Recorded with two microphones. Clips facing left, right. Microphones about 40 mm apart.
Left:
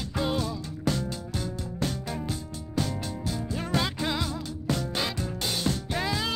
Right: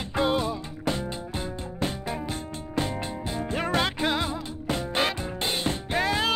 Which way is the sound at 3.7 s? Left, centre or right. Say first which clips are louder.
Right 2 dB; right.